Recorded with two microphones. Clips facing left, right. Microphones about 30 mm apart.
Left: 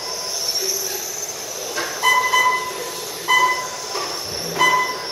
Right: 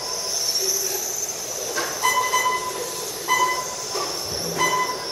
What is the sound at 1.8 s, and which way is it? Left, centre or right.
Music, centre.